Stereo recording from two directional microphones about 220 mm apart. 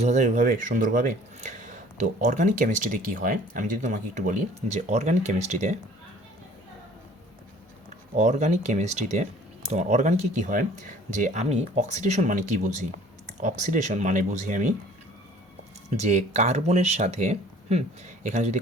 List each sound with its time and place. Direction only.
0.0 s speech: 35° right (ahead or behind)
8.1 s speech: 35° right (ahead or behind)
15.9 s speech: 30° right (ahead or behind)